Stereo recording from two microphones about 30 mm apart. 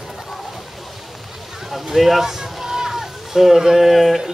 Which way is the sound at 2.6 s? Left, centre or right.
Centre.